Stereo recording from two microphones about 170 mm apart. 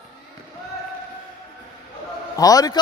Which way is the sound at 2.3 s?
20° left (ahead or behind).